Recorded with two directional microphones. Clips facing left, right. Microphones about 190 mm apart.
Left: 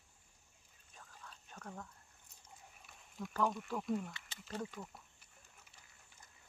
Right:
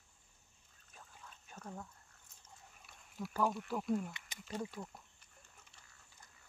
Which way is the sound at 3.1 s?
5° right (ahead or behind).